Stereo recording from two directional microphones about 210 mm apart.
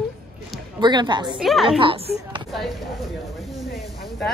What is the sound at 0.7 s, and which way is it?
Speech, 20° right (ahead or behind).